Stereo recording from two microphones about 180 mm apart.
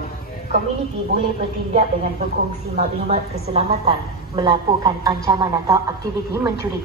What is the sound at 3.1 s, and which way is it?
Speech, 35° right (ahead or behind).